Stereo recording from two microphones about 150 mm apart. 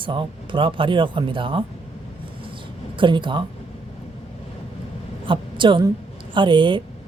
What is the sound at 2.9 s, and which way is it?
Speech, 30° right (ahead or behind).